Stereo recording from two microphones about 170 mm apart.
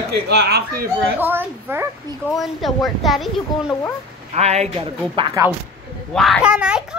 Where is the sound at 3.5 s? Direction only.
25° left (ahead or behind).